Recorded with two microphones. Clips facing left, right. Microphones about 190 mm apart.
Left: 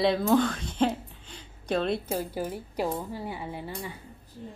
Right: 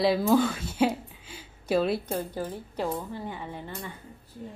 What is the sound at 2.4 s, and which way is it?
A woman's voice, 15° left (ahead or behind).